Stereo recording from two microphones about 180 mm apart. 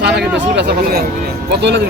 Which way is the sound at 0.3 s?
65° right (ahead or behind).